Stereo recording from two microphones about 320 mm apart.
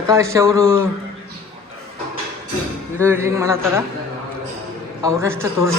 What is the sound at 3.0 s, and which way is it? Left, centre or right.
Speech, centre.